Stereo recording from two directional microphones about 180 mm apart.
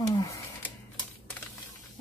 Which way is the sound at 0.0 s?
20° left (ahead or behind).